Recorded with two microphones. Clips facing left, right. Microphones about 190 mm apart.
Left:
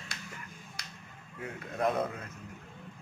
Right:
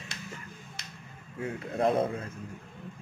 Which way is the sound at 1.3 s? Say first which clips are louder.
Right 5 dB; 30° right (ahead or behind).